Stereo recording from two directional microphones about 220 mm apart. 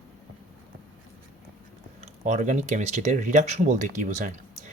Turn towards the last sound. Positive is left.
turn(degrees=-35)  # may be behind; listen again after turning